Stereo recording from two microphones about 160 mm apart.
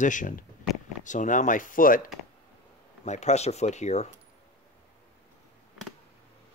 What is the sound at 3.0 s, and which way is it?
Speech, 45° left (ahead or behind).